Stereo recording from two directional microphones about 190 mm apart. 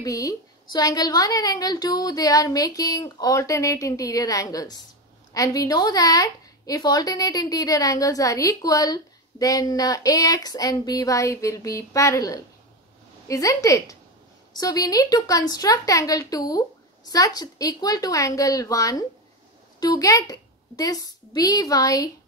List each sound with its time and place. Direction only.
0.0 s a woman's voice: 15° left (ahead or behind)